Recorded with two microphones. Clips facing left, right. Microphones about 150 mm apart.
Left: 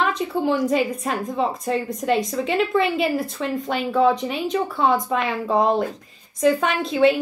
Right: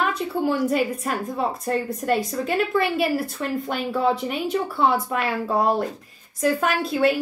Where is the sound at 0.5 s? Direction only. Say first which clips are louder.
Left 2 dB; 5° right (ahead or behind).